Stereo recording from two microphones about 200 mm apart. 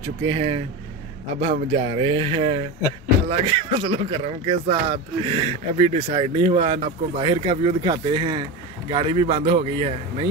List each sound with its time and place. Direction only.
0.3 s speech: 25° right (ahead or behind)